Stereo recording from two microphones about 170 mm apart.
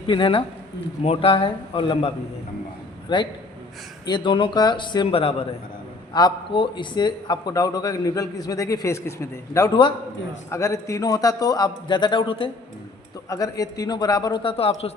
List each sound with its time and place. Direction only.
0.1 s a man's voice: 30° left (ahead or behind)